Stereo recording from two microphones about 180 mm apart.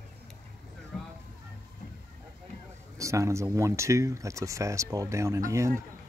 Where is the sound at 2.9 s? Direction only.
15° right (ahead or behind).